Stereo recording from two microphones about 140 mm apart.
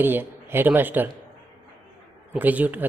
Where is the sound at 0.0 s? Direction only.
15° right (ahead or behind).